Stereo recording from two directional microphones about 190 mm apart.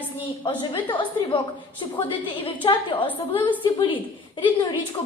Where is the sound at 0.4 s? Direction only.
30° left (ahead or behind).